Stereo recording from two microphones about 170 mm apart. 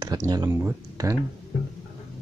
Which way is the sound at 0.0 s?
25° right (ahead or behind).